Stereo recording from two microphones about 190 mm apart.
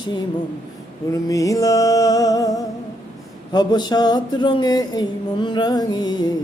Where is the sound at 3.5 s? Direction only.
20° left (ahead or behind).